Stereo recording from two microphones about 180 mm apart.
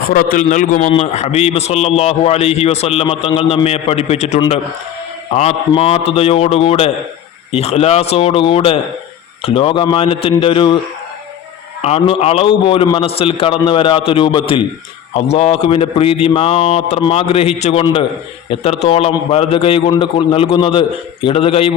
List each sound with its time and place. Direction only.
0.1 s a man's voice: 55° left (ahead or behind); by 10.8 s 30° left (ahead or behind)
11.8 s a man's voice: 35° left (ahead or behind)